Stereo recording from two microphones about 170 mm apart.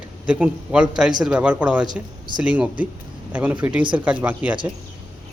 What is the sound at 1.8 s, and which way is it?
Speech, 25° right (ahead or behind).